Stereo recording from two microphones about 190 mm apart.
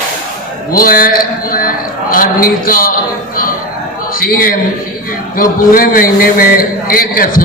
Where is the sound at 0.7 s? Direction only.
50° left (ahead or behind).